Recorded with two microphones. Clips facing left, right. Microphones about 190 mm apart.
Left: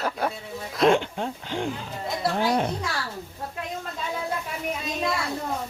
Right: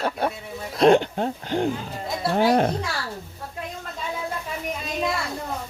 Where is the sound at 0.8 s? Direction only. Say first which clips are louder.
Right 4 dB; 40° right (ahead or behind).